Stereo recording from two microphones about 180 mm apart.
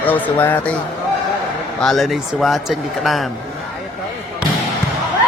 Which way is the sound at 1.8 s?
Centre (ahead or behind).